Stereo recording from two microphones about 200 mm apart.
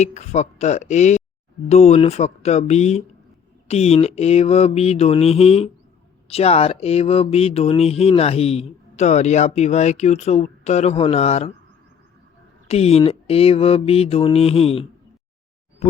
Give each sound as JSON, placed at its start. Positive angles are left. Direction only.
{"t": 0.0, "sound": "speech", "side_deg": 35}
{"t": 12.6, "sound": "mantra", "side_deg": 30}
{"t": 15.8, "sound": "a sound", "side_deg": 35}